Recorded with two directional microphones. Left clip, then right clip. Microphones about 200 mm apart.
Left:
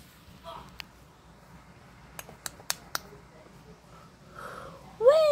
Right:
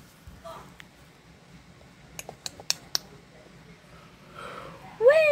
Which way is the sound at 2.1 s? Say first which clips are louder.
Right 3 dB; centre (ahead or behind).